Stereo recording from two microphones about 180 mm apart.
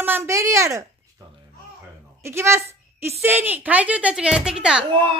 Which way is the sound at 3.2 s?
10° right (ahead or behind).